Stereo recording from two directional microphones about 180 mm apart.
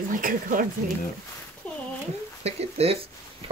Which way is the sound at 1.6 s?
10° left (ahead or behind).